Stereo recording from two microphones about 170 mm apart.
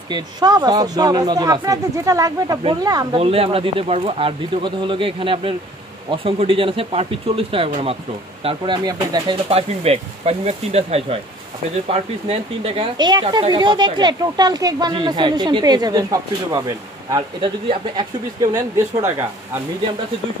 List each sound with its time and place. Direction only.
0.1 s speech: 25° right (ahead or behind)
3.2 s speech: 35° right (ahead or behind); by 19.2 s 15° right (ahead or behind)